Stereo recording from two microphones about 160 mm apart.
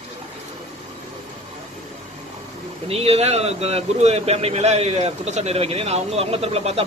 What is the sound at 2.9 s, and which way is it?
A man's voice, 40° right (ahead or behind).